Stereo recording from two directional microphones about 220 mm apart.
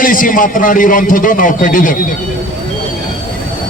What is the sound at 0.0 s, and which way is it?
A man's voice, 40° left (ahead or behind).